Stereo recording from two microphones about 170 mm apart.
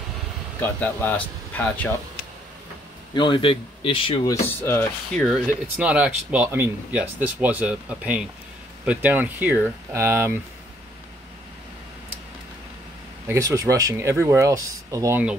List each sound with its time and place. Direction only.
0.6 s speech: 10° left (ahead or behind)
3.2 s speech: 30° left (ahead or behind)
4.3 s speech: 15° left (ahead or behind)
5.8 s speech: 5° right (ahead or behind)
13.3 s speech: 20° right (ahead or behind)